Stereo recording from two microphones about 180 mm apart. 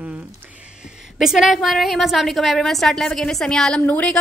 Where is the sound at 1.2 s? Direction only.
Centre (ahead or behind).